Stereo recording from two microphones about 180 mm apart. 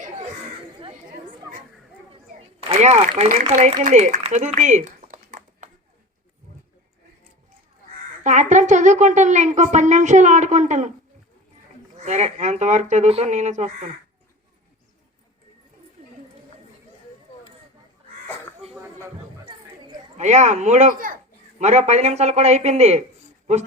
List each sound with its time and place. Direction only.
2.6 s speech: 35° right (ahead or behind)
8.2 s a woman's voice: 45° right (ahead or behind)
11.9 s a woman's voice: 40° right (ahead or behind)
20.1 s a woman's voice: 40° right (ahead or behind)